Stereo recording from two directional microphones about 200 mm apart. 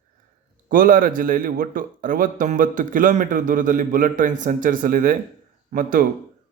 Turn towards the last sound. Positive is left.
turn(degrees=-45)  # may be behind; listen again after turning